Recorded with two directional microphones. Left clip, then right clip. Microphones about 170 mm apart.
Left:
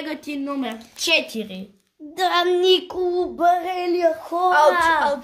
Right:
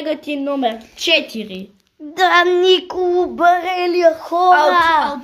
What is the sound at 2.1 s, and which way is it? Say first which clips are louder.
Child singing: right 6 dB; 10° right (ahead or behind).